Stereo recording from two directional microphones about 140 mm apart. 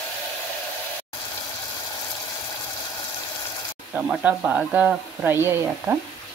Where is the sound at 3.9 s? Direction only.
10° right (ahead or behind).